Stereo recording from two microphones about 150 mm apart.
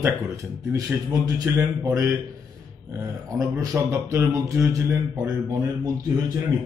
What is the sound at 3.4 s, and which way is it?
Speech, 20° right (ahead or behind).